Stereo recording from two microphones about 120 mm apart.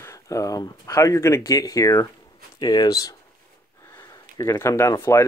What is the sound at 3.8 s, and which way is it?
Gasp, 30° left (ahead or behind).